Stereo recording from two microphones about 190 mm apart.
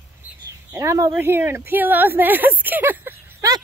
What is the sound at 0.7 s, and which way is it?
Speech, 15° right (ahead or behind).